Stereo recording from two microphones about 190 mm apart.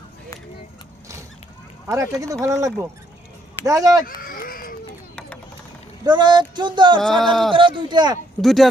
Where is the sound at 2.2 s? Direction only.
20° right (ahead or behind).